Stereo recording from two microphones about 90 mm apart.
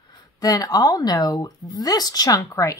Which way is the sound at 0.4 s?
45° left (ahead or behind).